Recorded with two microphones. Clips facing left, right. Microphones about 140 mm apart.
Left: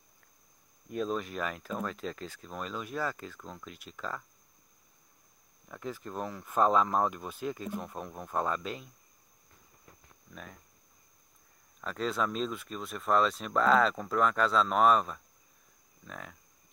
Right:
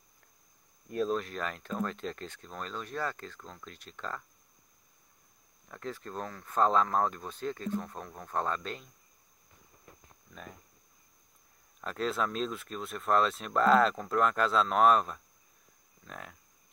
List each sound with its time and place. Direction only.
0.8 s speech: centre (ahead or behind)
5.7 s speech: 5° left (ahead or behind)
11.8 s speech: centre (ahead or behind)